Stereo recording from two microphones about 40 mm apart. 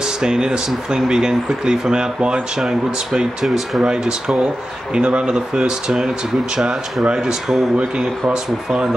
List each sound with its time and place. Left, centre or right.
0.2 s speech: centre
3.4 s speech: centre
3.8 s speech: right